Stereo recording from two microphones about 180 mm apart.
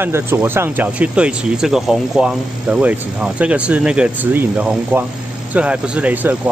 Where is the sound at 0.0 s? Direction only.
10° right (ahead or behind).